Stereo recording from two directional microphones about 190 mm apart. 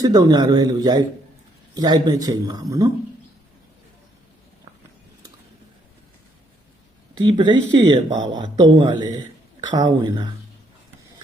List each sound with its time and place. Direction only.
0.0 s speech: 20° right (ahead or behind)
7.2 s speech: 25° right (ahead or behind)